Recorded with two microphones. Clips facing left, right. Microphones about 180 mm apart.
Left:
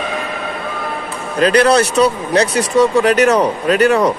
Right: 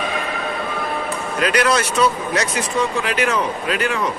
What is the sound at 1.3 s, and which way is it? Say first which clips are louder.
Speech: left 7 dB; 35° left (ahead or behind).